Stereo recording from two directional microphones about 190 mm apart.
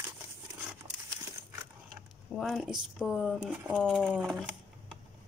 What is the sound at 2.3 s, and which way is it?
Speech, centre (ahead or behind).